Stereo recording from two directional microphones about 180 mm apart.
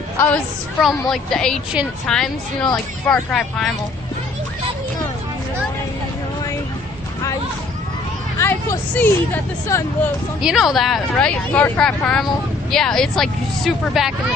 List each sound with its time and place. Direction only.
0.2 s speech: 5° left (ahead or behind)
8.4 s speech: 15° left (ahead or behind)
10.4 s speech: centre (ahead or behind)